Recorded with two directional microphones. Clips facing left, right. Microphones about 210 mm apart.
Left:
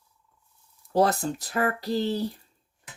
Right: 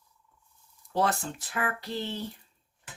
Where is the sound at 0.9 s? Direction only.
40° left (ahead or behind).